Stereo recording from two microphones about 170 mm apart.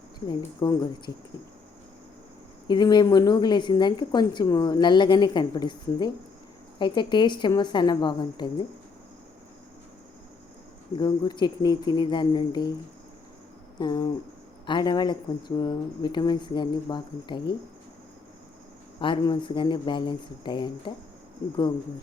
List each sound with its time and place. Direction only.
0.3 s a woman's voice: 25° left (ahead or behind)
2.6 s a woman's voice: 25° left (ahead or behind)
10.9 s a woman's voice: 25° left (ahead or behind)
13.7 s a woman's voice: 25° left (ahead or behind)
18.9 s a woman's voice: 30° left (ahead or behind)